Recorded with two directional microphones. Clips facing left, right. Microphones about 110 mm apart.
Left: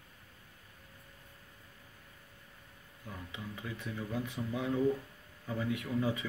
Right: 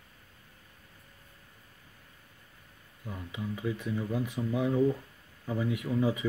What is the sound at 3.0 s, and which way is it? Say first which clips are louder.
Speech: right 7 dB; 15° right (ahead or behind).